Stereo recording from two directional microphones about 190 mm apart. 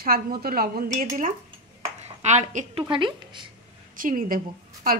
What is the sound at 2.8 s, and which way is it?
Speech, 25° right (ahead or behind).